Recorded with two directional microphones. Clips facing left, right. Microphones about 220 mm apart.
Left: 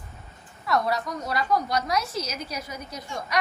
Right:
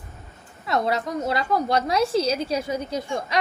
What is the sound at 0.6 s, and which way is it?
A woman's voice, 25° right (ahead or behind).